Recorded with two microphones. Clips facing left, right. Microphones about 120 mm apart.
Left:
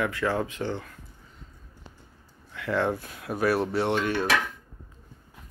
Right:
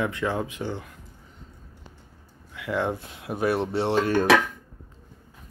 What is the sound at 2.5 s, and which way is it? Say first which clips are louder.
Speech: left 1 dB; 15° right (ahead or behind).